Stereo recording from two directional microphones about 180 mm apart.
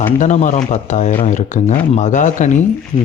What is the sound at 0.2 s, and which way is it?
Speech, 40° left (ahead or behind).